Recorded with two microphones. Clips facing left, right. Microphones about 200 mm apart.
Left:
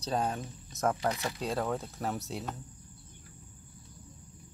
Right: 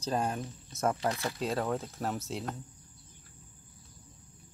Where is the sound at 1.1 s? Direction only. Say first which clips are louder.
Even; 15° left (ahead or behind).